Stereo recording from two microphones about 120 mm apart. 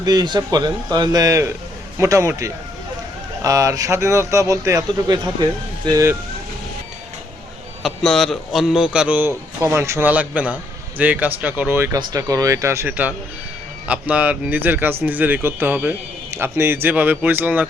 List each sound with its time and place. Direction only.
0.0 s a man's voice: 35° right (ahead or behind)
7.8 s a man's voice: centre (ahead or behind); by 11.9 s 20° right (ahead or behind)
11.9 s a man's voice: 30° right (ahead or behind); by 17.7 s 15° right (ahead or behind)